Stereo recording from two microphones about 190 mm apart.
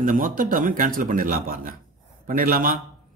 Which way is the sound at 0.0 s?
45° right (ahead or behind).